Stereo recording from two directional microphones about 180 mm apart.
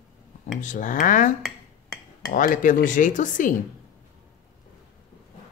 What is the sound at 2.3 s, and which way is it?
Speech, 45° left (ahead or behind).